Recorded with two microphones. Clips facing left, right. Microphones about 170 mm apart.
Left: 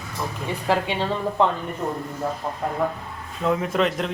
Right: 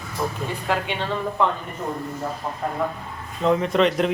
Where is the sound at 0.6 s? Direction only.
30° left (ahead or behind).